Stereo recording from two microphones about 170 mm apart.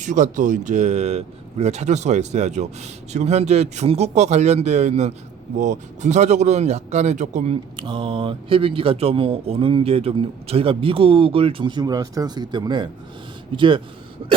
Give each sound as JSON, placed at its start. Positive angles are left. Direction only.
{"t": 0.0, "sound": "speech", "side_deg": -45}